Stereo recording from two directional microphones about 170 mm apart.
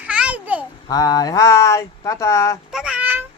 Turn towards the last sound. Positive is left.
turn(degrees=-10)  # may be behind; listen again after turning